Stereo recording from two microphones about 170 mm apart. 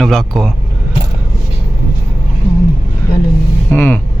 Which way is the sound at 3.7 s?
10° left (ahead or behind).